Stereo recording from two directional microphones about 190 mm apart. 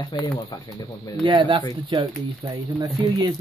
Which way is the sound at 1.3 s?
25° right (ahead or behind).